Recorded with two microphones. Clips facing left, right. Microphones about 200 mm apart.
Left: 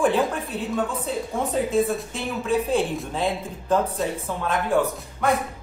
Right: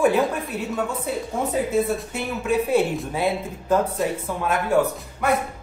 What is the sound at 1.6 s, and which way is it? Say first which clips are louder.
Speech: left 1 dB; 5° right (ahead or behind).